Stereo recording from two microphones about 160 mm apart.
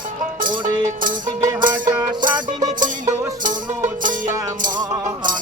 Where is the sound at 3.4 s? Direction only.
55° right (ahead or behind).